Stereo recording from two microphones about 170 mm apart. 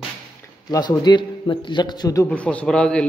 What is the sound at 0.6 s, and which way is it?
A man's voice, 25° left (ahead or behind).